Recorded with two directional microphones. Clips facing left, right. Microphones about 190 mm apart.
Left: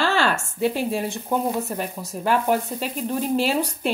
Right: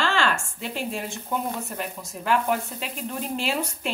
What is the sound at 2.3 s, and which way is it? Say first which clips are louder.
A woman's voice: left 3 dB; 35° left (ahead or behind).